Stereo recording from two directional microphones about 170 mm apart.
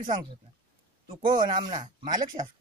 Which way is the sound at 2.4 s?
45° right (ahead or behind).